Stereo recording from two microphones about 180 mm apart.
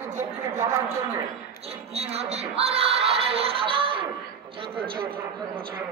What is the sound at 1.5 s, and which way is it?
A woman's voice, 35° right (ahead or behind).